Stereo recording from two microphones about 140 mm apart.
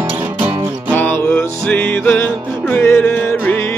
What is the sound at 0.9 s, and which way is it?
Music, 15° left (ahead or behind).